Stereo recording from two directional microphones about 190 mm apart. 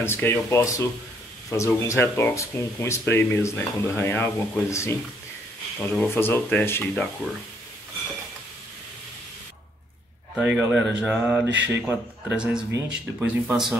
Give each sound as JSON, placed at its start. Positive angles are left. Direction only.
{"t": 0.0, "sound": "speech", "side_deg": 10}
{"t": 10.3, "sound": "speech", "side_deg": 0}
{"t": 11.4, "sound": "speech", "side_deg": -70}
{"t": 11.8, "sound": "speech", "side_deg": -5}